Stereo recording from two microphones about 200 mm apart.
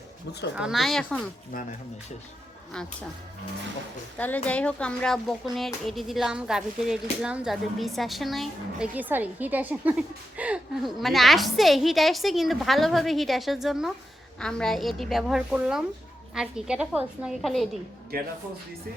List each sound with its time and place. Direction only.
0.5 s speech: 5° right (ahead or behind)
4.4 s speech: 5° left (ahead or behind)
18.1 s speech: 50° right (ahead or behind)